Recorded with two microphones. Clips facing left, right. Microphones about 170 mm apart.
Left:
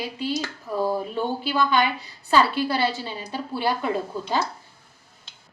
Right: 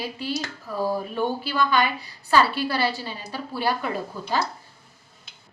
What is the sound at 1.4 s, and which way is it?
A woman's voice, 20° left (ahead or behind).